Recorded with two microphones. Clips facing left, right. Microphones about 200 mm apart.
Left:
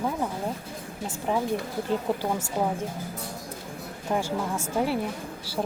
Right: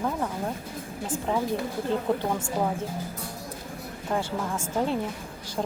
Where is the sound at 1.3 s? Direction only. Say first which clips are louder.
Left 1 dB; 15° left (ahead or behind).